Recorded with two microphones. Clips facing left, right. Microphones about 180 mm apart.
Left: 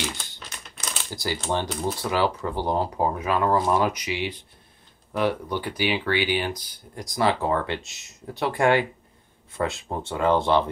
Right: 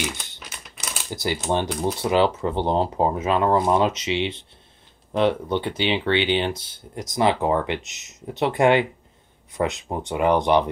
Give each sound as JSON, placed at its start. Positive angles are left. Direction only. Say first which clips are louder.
{"t": 0.0, "sound": "crumpling", "louder": "right 2 dB", "side_deg": -15}
{"t": 0.5, "sound": "crumpling", "louder": "even", "side_deg": -5}
{"t": 1.1, "sound": "speech", "louder": "right 3 dB", "side_deg": -20}